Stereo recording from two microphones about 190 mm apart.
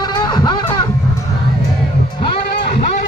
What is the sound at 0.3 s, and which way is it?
Music, 20° left (ahead or behind).